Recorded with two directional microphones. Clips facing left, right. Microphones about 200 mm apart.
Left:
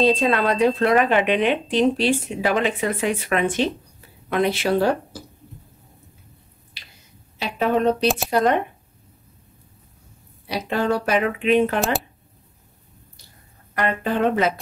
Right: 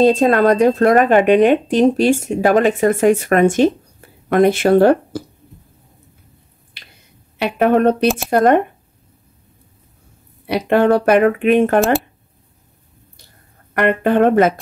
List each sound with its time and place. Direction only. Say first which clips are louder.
0.0 s a woman's voice: right 7 dB; 45° right (ahead or behind)
6.8 s finger snapping: right 3 dB; 55° right (ahead or behind)
7.3 s a woman's voice: right 7 dB; 60° right (ahead or behind)
10.4 s speech: right 9 dB; 60° right (ahead or behind)
13.7 s speech: right 8 dB; 60° right (ahead or behind)